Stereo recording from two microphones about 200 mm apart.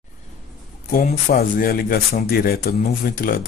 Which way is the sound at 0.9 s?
45° left (ahead or behind).